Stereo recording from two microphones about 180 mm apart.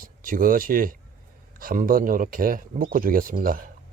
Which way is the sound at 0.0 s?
50° right (ahead or behind).